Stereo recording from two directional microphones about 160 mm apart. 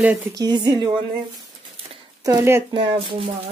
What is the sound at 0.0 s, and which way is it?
Speech, 10° right (ahead or behind).